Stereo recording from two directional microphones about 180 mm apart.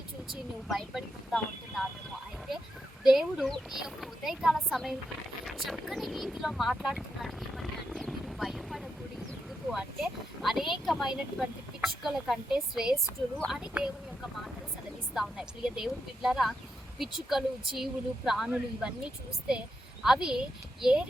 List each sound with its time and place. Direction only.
0.7 s speech: centre (ahead or behind)
3.0 s speech: centre (ahead or behind)
15.1 s speech: 5° right (ahead or behind)
20.1 s speech: 5° right (ahead or behind)